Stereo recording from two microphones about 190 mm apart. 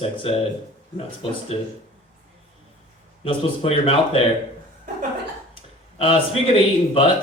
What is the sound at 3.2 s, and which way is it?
Speech, 30° left (ahead or behind).